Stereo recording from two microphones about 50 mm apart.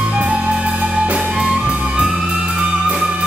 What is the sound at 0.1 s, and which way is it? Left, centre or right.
Music, right.